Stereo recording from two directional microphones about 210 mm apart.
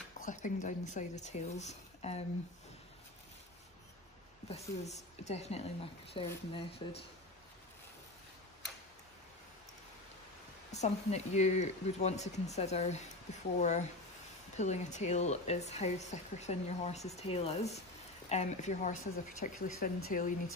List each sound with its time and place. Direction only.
0.2 s speech: 35° left (ahead or behind)
4.5 s speech: 30° left (ahead or behind)
10.7 s speech: 30° left (ahead or behind)